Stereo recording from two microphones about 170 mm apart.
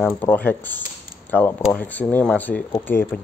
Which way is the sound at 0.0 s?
5° left (ahead or behind).